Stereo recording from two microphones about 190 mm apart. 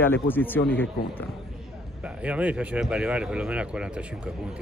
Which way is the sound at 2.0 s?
5° right (ahead or behind).